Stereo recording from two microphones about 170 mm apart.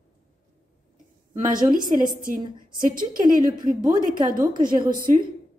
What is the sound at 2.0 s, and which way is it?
A woman's voice, 55° right (ahead or behind).